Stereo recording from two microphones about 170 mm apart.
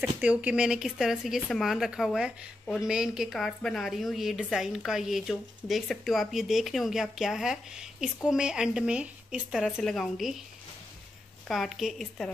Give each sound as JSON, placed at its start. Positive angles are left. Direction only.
{"t": 0.0, "sound": "speech", "side_deg": -10}
{"t": 11.4, "sound": "speech", "side_deg": 0}